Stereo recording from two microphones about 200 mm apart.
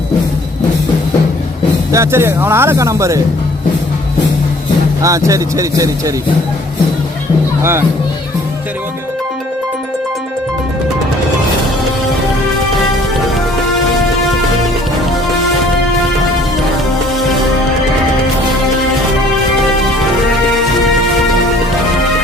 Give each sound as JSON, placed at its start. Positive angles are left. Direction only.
{"t": 1.9, "sound": "speech", "side_deg": -15}
{"t": 5.0, "sound": "speech", "side_deg": -15}
{"t": 7.6, "sound": "speech", "side_deg": -10}